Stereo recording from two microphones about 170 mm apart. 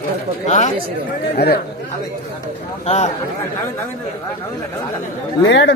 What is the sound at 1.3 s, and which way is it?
Speech, 70° left (ahead or behind).